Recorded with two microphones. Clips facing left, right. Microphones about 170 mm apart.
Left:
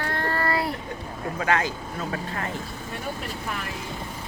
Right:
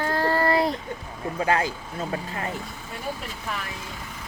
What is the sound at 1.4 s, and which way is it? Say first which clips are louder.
Speech: right 1 dB; 30° right (ahead or behind).